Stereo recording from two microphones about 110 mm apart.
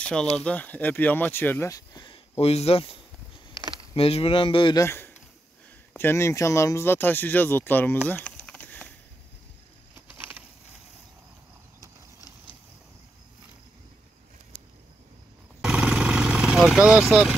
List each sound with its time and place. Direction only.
0.0 s speech: 5° left (ahead or behind)
1.7 s a sound: 35° left (ahead or behind)
2.0 s speech: 60° left (ahead or behind)
4.7 s speech: 20° left (ahead or behind)
8.1 s a sound: 10° left (ahead or behind)
15.6 s vehicle: 10° right (ahead or behind)